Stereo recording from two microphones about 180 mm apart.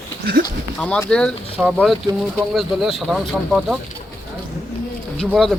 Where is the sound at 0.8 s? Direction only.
5° left (ahead or behind).